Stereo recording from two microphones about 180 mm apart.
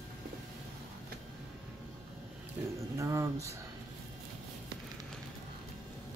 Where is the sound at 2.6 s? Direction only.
10° right (ahead or behind).